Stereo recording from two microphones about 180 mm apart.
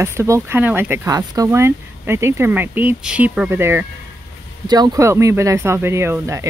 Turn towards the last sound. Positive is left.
turn(degrees=-15)  # may be behind; listen again after turning